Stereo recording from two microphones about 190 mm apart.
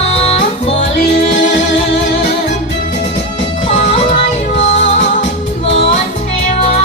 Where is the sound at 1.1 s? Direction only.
65° left (ahead or behind).